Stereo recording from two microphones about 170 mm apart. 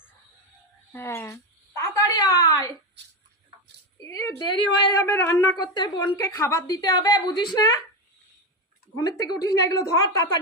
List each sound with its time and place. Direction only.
0.9 s speech: 15° left (ahead or behind)
1.9 s a sound: 20° left (ahead or behind)
4.0 s a woman's voice: 20° left (ahead or behind)
9.0 s a woman's voice: 20° left (ahead or behind)